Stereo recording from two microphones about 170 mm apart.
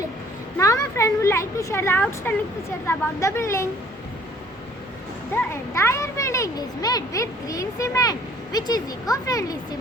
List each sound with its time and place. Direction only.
0.5 s a woman's voice: 20° left (ahead or behind)
5.3 s a child's voice: 15° left (ahead or behind)